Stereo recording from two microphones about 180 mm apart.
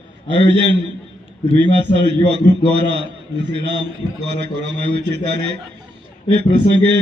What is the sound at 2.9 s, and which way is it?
A man's voice, 75° right (ahead or behind).